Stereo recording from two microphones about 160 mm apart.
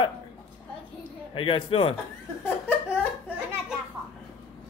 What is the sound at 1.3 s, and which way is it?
Speech, 35° left (ahead or behind).